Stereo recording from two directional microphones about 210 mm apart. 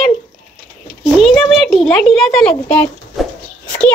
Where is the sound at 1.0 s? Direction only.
Centre (ahead or behind).